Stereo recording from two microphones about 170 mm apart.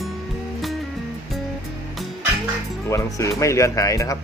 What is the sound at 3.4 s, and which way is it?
Speech, 20° left (ahead or behind).